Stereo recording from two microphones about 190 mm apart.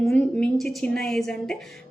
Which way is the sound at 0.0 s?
5° left (ahead or behind).